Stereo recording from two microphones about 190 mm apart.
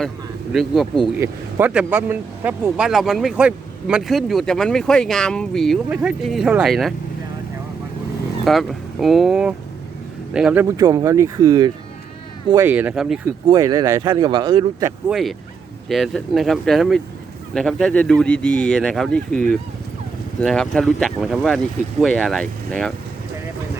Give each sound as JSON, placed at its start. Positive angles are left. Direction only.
{"t": 0.5, "sound": "speech", "side_deg": 0}
{"t": 8.4, "sound": "speech", "side_deg": 0}
{"t": 12.6, "sound": "speech", "side_deg": -10}
{"t": 13.2, "sound": "speech", "side_deg": -20}
{"t": 15.1, "sound": "speech", "side_deg": 0}
{"t": 20.4, "sound": "speech", "side_deg": 0}